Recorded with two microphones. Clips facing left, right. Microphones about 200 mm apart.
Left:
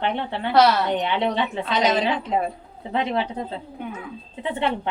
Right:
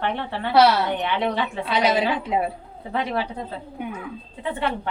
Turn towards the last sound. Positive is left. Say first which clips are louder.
# left 1 dB
turn(degrees=20)  # may be behind; listen again after turning